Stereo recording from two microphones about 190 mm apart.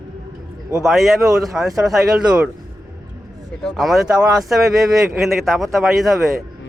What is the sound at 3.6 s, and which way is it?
Speech, centre (ahead or behind).